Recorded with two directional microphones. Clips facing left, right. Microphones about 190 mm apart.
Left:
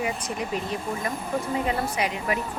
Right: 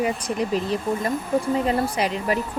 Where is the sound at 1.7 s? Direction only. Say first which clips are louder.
Right 4 dB; 35° right (ahead or behind).